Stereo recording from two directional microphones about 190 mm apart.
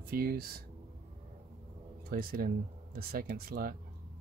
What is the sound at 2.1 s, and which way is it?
Speech, 50° right (ahead or behind).